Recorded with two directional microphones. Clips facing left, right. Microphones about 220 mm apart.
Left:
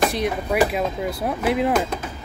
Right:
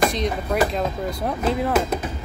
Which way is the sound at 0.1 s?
10° left (ahead or behind).